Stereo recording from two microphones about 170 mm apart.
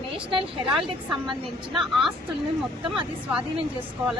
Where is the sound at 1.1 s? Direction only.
Centre (ahead or behind).